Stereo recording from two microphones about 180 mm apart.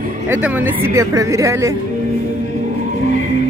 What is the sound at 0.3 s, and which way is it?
Speech, 10° right (ahead or behind).